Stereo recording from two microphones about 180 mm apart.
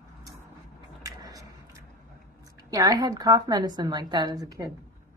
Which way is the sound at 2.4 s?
20° right (ahead or behind).